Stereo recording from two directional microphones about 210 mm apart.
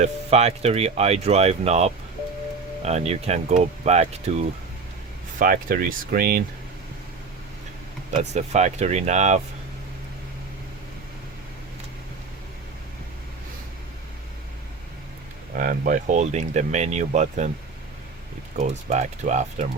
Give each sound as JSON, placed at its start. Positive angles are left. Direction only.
{"t": 0.0, "sound": "speech", "side_deg": -30}
{"t": 8.1, "sound": "speech", "side_deg": -35}
{"t": 15.5, "sound": "speech", "side_deg": -40}
{"t": 18.5, "sound": "speech", "side_deg": -35}